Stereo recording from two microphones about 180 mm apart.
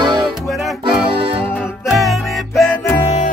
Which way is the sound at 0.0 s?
25° right (ahead or behind).